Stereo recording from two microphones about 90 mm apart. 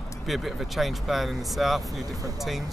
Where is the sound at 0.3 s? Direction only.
Centre (ahead or behind).